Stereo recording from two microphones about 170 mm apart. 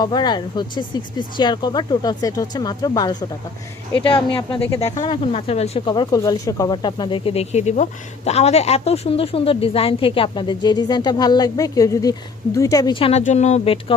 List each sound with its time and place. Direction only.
0.0 s speech: 25° left (ahead or behind)
5.9 s speech: 25° left (ahead or behind)